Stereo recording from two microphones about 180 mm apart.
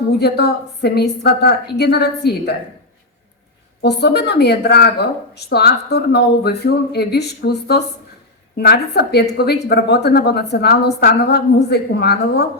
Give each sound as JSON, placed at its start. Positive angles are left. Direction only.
{"t": 0.2, "sound": "speech", "side_deg": 65}
{"t": 3.8, "sound": "speech", "side_deg": 65}